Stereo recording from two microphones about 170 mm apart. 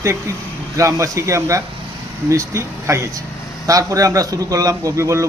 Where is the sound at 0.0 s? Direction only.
15° right (ahead or behind).